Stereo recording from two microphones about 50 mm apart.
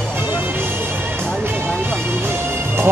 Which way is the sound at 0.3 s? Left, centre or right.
Right.